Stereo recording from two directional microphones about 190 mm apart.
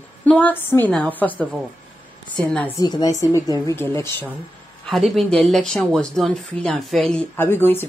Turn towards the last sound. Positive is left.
turn(degrees=10)  # may be behind; listen again after turning